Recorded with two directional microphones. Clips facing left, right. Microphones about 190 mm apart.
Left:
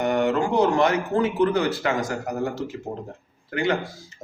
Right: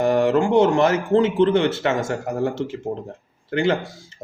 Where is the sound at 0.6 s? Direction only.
25° right (ahead or behind).